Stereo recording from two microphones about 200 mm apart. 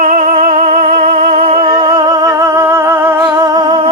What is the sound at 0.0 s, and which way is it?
Music, 40° right (ahead or behind).